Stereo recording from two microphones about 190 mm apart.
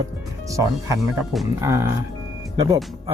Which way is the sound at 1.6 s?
15° right (ahead or behind).